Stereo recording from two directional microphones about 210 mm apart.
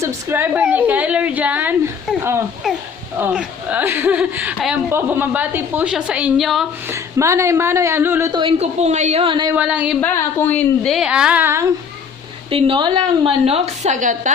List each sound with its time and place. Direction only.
0.0 s a woman's voice: 10° right (ahead or behind)
2.6 s a sound: centre (ahead or behind)
3.2 s speech: 5° right (ahead or behind)
6.8 s speech: 15° right (ahead or behind)
9.6 s a woman's voice: 5° right (ahead or behind)
10.0 s a woman's voice: 10° left (ahead or behind); by 11.7 s 15° right (ahead or behind)
12.5 s a woman's voice: 25° right (ahead or behind)